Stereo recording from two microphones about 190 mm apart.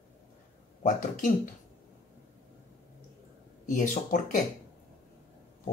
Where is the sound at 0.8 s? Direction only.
45° left (ahead or behind).